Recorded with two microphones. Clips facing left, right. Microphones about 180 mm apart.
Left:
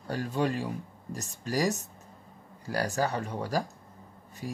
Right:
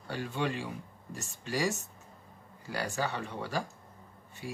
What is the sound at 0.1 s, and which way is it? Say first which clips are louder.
Speech: left 4 dB; 40° left (ahead or behind).